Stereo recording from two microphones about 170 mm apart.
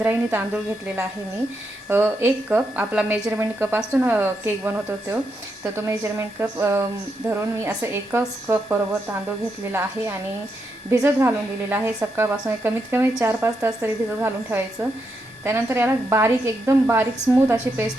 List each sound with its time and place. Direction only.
0.0 s a woman's voice: 10° right (ahead or behind)